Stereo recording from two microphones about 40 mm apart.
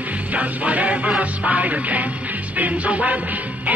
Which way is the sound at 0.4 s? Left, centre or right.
Right.